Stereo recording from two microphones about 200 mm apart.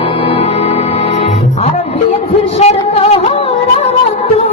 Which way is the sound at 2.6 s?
35° left (ahead or behind).